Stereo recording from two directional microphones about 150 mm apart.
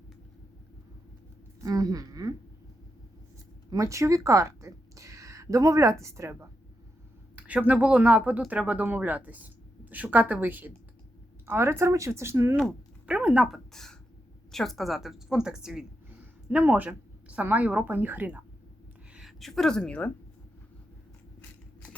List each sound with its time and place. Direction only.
1.6 s speech: 25° right (ahead or behind)
3.7 s speech: 20° right (ahead or behind)
12.5 s speech: 5° right (ahead or behind)
19.1 s a woman's voice: centre (ahead or behind)